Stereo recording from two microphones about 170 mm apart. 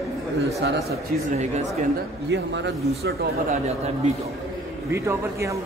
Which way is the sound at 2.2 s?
90° right.